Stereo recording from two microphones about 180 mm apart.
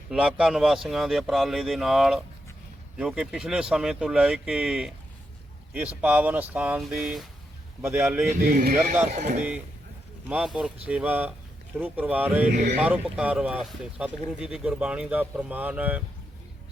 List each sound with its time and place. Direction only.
0.1 s speech: 5° right (ahead or behind)
7.8 s speech: 10° right (ahead or behind)
8.4 s speech: 55° right (ahead or behind)
9.1 s speech: 40° right (ahead or behind)
10.2 s speech: 5° right (ahead or behind)
12.5 s speech: 40° right (ahead or behind)
12.8 s speech: 10° right (ahead or behind)